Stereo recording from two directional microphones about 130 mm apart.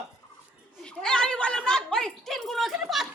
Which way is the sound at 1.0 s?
5° left (ahead or behind).